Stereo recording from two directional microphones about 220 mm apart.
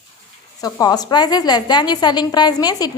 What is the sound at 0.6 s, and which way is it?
A woman's voice, 15° left (ahead or behind).